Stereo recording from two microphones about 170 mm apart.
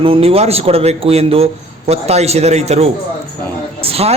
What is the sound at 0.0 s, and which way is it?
Speech, 35° right (ahead or behind).